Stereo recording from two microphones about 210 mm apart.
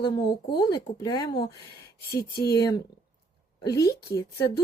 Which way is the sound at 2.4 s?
50° left (ahead or behind).